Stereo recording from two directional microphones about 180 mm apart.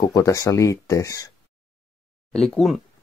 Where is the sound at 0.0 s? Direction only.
20° left (ahead or behind).